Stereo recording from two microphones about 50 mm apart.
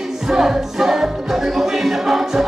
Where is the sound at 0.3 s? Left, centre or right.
Centre.